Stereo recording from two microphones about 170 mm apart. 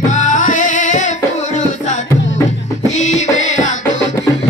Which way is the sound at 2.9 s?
45° left (ahead or behind).